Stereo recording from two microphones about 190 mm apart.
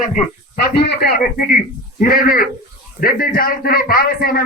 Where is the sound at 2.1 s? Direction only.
50° left (ahead or behind).